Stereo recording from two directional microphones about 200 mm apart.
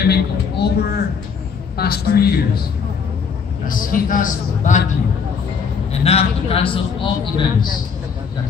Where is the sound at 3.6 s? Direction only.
45° left (ahead or behind).